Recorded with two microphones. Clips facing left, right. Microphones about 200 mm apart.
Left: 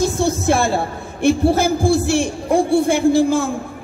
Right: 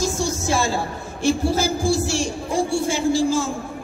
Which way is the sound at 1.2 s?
60° left (ahead or behind).